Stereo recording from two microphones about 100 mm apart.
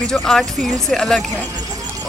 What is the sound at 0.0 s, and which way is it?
Speech, 5° left (ahead or behind).